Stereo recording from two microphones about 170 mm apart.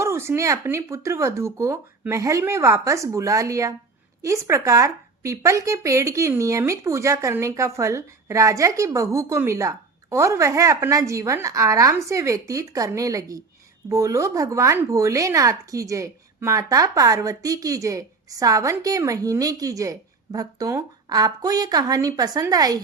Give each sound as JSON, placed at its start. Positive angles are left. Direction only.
{"t": 0.0, "sound": "speech", "side_deg": -15}